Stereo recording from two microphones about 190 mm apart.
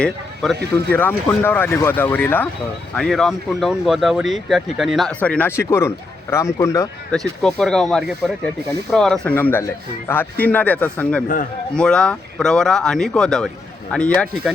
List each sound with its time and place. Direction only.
0.7 s speech: 10° left (ahead or behind)
7.1 s speech: 5° left (ahead or behind)